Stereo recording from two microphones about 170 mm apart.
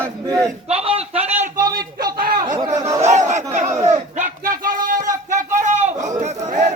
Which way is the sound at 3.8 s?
40° right (ahead or behind).